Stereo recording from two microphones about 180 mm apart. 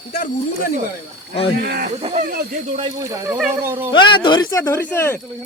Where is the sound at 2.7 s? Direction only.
20° right (ahead or behind).